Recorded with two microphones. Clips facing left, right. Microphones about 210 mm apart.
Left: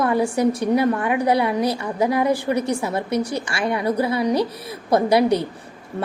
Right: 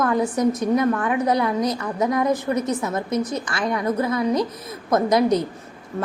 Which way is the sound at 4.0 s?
30° left (ahead or behind).